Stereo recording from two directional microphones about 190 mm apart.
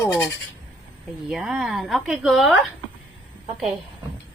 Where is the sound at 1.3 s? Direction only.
Centre (ahead or behind).